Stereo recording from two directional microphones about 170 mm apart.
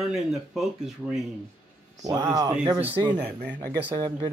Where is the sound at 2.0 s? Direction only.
20° right (ahead or behind).